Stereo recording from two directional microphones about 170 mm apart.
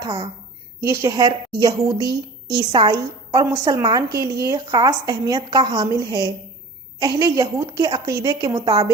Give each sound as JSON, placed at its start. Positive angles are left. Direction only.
{"t": 0.0, "sound": "a woman's voice", "side_deg": -25}